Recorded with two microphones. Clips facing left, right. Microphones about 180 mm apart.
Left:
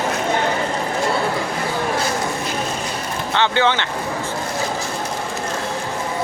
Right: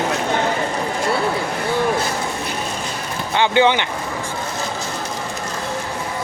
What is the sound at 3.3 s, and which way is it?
Speech, 15° right (ahead or behind).